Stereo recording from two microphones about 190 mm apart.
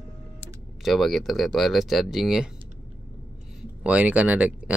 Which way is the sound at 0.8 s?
Centre (ahead or behind).